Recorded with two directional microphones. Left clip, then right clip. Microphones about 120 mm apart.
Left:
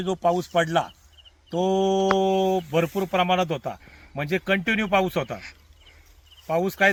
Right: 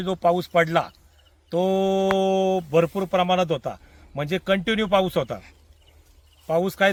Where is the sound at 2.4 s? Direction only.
10° right (ahead or behind).